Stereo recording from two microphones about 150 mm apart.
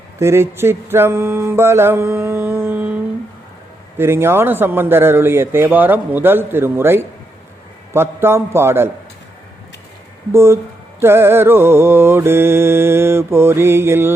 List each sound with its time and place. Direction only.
0.2 s mantra: 15° right (ahead or behind)
10.3 s mantra: 15° right (ahead or behind)